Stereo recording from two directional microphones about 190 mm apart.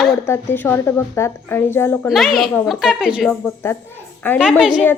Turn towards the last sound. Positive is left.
turn(degrees=-5)  # may be behind; listen again after turning